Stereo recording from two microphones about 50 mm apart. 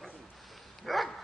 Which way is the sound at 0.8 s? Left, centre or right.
Centre.